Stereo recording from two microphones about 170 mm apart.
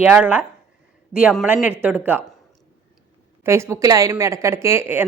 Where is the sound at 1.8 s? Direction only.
10° right (ahead or behind).